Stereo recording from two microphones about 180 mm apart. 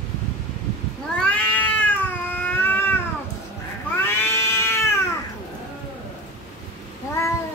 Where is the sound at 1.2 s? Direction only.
5° left (ahead or behind).